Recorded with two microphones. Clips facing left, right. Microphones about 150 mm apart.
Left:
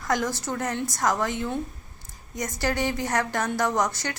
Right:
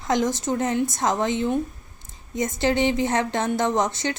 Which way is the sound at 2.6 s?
20° right (ahead or behind).